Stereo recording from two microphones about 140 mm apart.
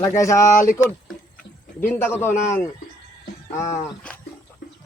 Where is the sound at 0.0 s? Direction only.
20° left (ahead or behind).